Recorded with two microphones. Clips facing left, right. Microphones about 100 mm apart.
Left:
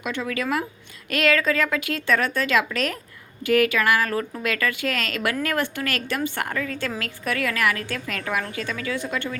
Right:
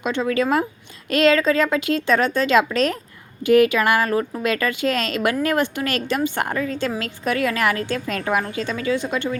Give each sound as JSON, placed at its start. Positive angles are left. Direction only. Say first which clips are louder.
{"t": 0.0, "sound": "speech", "louder": "right 6 dB", "side_deg": -25}